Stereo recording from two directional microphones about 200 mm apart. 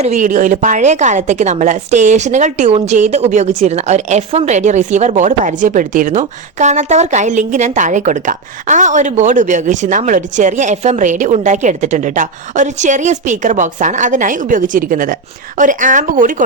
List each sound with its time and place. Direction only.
0.0 s a woman's voice: 40° right (ahead or behind)